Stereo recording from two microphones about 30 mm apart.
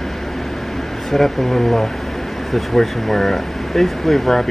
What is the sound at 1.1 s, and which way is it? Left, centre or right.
Speech, centre.